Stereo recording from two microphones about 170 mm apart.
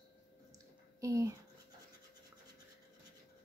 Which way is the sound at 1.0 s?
20° right (ahead or behind).